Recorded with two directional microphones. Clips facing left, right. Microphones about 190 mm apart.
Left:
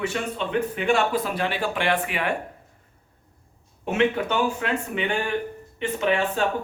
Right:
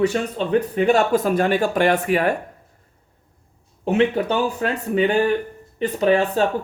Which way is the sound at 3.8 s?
35° right (ahead or behind).